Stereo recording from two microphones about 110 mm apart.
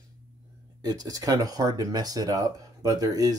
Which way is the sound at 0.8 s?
35° right (ahead or behind).